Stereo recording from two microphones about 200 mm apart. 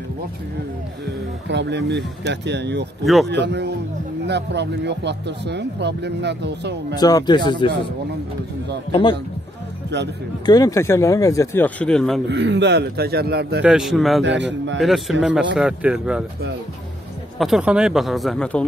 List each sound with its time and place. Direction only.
1.5 s speech: 60° right (ahead or behind)
7.0 s speech: 20° left (ahead or behind)
9.9 s speech: 60° right (ahead or behind)
10.4 s speech: 20° left (ahead or behind); by 12.2 s 5° left (ahead or behind)
12.3 s speech: 65° right (ahead or behind)
13.6 s speech: 5° right (ahead or behind)
14.2 s speech: 65° right (ahead or behind)
14.8 s speech: centre (ahead or behind)
17.4 s speech: 5° right (ahead or behind)